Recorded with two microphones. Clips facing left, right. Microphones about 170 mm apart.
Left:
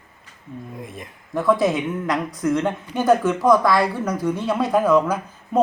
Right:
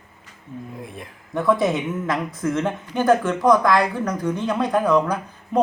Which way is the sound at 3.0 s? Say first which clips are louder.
Even; 10° left (ahead or behind).